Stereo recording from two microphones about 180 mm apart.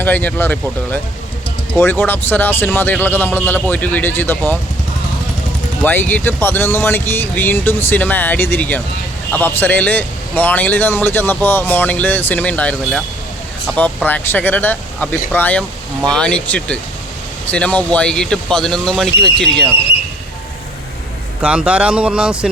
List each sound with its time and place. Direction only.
0.0 s a man's voice: 10° left (ahead or behind)
1.8 s a man's voice: 10° left (ahead or behind)
5.8 s a man's voice: 10° left (ahead or behind)
21.4 s speech: 5° right (ahead or behind)